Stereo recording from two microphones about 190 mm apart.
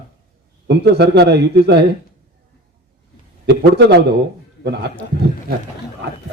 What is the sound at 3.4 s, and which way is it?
Speech, 60° right (ahead or behind).